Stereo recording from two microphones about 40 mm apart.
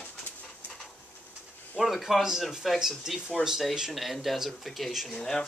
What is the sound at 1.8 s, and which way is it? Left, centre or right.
Speech, centre.